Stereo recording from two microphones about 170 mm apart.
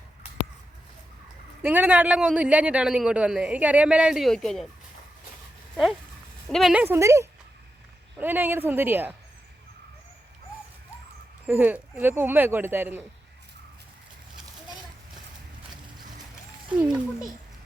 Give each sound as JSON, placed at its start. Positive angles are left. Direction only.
{"t": 1.6, "sound": "a man's voice", "side_deg": -10}
{"t": 6.5, "sound": "a child's voice", "side_deg": 0}
{"t": 6.8, "sound": "a man's voice", "side_deg": -15}
{"t": 11.4, "sound": "a man's voice", "side_deg": -10}
{"t": 16.6, "sound": "a child's voice", "side_deg": -5}